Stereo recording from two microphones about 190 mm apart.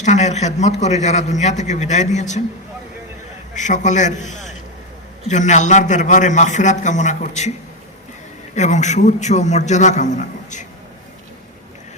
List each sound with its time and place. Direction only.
0.0 s a man's voice: 40° left (ahead or behind)
3.5 s a man's voice: 40° left (ahead or behind)
8.5 s a man's voice: 40° left (ahead or behind)